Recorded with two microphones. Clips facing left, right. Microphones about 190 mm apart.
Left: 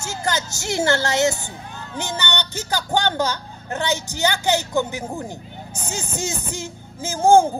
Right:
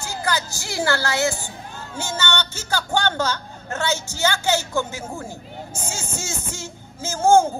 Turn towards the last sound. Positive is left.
turn(degrees=15)  # may be behind; listen again after turning